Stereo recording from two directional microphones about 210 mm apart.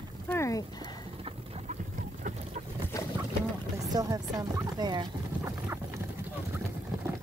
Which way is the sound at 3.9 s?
15° right (ahead or behind).